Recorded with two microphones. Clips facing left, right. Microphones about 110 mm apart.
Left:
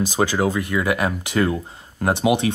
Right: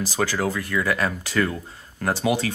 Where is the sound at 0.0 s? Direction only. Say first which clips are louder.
Left 4 dB; 20° left (ahead or behind).